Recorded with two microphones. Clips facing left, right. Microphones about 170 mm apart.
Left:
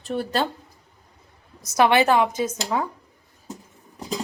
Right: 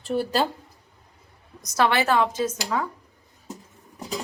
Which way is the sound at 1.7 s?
20° left (ahead or behind).